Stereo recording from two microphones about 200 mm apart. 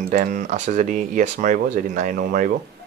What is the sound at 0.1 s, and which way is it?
Speech, 40° right (ahead or behind).